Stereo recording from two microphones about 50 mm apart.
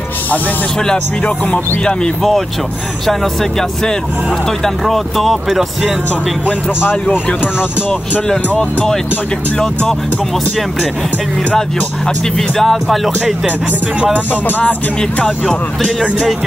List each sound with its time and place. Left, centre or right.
4.6 s speech: centre
8.3 s speech: centre
12.4 s speech: centre
14.3 s music: left
15.4 s speech: centre